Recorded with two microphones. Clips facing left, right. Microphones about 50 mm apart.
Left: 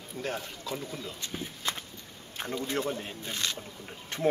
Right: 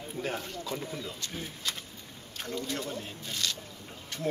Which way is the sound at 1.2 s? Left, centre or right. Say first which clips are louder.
Left 2 dB; left.